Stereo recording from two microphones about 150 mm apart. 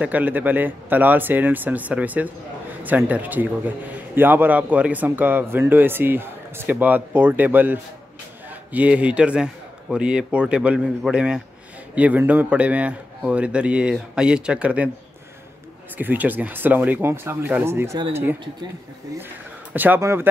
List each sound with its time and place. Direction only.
0.0 s a man's voice: 10° right (ahead or behind)
16.0 s a man's voice: 10° right (ahead or behind)
19.7 s a man's voice: 10° right (ahead or behind)